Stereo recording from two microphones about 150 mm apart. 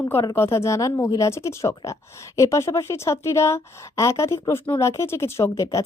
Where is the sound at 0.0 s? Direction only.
15° left (ahead or behind).